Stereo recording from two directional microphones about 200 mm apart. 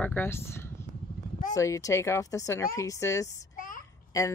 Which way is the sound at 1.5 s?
15° left (ahead or behind).